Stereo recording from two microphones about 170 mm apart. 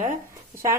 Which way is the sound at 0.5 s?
15° right (ahead or behind).